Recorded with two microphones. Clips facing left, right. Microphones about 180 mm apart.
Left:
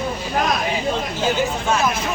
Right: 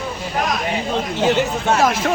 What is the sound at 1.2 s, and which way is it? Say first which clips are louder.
Speech: right 3 dB; 70° right (ahead or behind).